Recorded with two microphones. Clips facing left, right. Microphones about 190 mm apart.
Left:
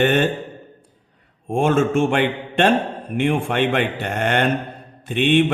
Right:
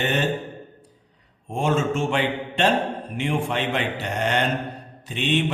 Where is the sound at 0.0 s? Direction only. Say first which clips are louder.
Left 7 dB; 55° left (ahead or behind).